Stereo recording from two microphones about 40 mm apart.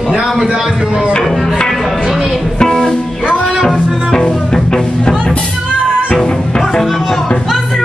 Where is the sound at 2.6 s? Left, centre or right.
Centre.